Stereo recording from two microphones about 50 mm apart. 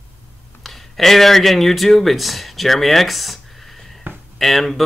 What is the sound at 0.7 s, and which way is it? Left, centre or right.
Speech, centre.